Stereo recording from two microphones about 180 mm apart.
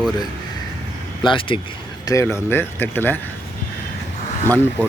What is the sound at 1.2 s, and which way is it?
Speech, 30° left (ahead or behind).